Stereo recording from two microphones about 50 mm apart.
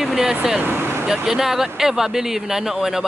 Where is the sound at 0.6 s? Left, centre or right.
Right.